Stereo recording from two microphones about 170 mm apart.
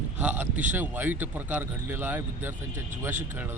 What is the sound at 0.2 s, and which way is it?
Speech, 10° right (ahead or behind).